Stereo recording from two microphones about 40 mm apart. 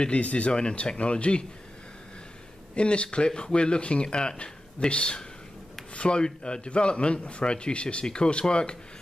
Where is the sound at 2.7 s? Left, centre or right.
Left.